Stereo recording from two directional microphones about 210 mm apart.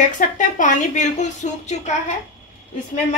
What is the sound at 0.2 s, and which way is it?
A woman's voice, 35° left (ahead or behind).